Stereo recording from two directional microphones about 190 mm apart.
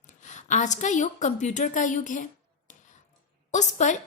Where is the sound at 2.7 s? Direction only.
40° left (ahead or behind).